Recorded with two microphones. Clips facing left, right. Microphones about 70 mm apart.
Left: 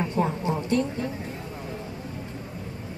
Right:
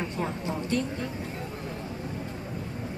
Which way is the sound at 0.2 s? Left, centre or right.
Left.